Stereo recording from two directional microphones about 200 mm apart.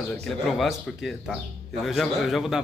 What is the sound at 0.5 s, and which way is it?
Speech, centre (ahead or behind).